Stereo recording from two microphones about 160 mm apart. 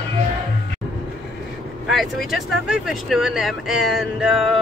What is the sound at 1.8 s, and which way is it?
Speech, centre (ahead or behind).